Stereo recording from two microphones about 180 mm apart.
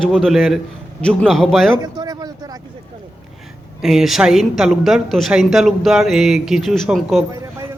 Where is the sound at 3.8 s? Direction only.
5° right (ahead or behind).